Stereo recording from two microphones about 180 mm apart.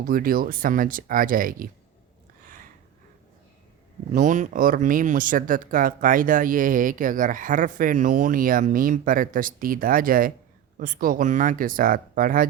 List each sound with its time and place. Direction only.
0.0 s speech: 50° right (ahead or behind)
4.1 s speech: 45° right (ahead or behind)